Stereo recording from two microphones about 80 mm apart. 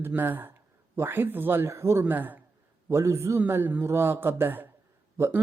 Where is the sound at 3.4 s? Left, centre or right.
Right.